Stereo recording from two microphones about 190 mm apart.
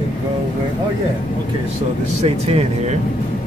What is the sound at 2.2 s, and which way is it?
Speech, 35° right (ahead or behind).